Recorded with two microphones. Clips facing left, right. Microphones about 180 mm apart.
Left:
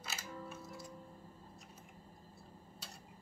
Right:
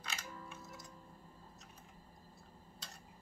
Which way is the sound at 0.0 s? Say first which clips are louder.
Left 2 dB; 5° left (ahead or behind).